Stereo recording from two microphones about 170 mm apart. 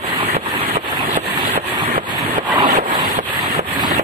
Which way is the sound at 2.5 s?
30° right (ahead or behind).